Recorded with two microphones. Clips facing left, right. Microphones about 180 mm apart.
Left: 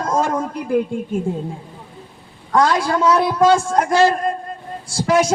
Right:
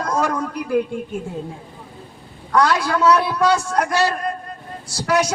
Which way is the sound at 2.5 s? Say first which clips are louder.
Left 1 dB; 25° left (ahead or behind).